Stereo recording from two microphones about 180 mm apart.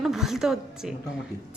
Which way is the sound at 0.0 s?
Centre (ahead or behind).